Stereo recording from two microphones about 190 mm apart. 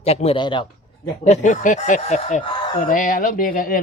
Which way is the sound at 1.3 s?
40° left (ahead or behind).